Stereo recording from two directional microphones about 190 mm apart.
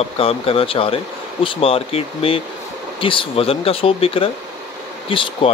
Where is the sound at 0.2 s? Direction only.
30° left (ahead or behind).